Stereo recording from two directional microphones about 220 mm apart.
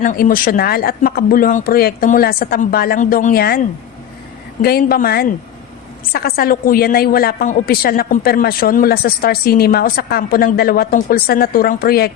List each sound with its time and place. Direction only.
0.0 s speech: 35° left (ahead or behind)
4.6 s a woman's voice: 45° left (ahead or behind)